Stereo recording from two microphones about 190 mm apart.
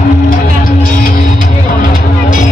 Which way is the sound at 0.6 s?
50° left (ahead or behind).